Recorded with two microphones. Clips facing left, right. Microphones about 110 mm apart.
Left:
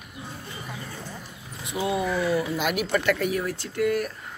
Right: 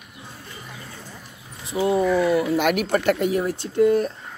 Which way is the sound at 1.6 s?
30° right (ahead or behind).